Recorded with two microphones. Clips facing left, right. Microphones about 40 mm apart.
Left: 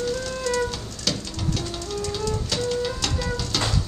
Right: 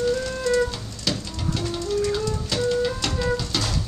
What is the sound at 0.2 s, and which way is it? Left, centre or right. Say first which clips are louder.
Music: right 3 dB; centre.